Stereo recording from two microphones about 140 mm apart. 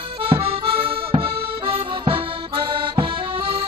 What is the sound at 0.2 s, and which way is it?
Accordion, 40° right (ahead or behind).